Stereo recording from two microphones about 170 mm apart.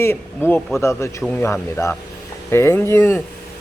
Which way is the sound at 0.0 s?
15° left (ahead or behind).